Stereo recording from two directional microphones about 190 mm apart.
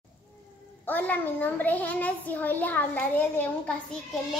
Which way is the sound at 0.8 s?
10° left (ahead or behind).